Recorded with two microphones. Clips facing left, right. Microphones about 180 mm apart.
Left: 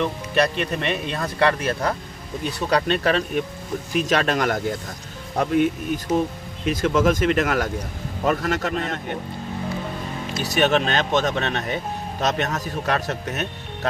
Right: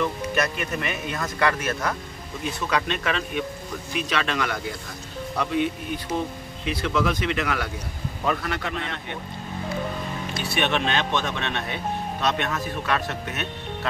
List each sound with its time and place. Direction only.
0.0 s speech: 30° left (ahead or behind)
10.4 s speech: 40° left (ahead or behind)